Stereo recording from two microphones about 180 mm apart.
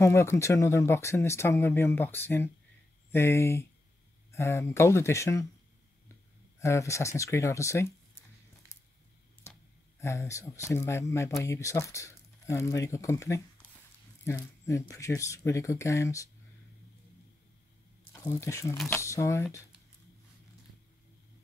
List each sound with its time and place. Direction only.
0.0 s speech: 15° left (ahead or behind)
6.6 s speech: 15° left (ahead or behind)
8.7 s squish: 15° left (ahead or behind)
9.9 s speech: 15° left (ahead or behind)
18.1 s speech: 15° left (ahead or behind)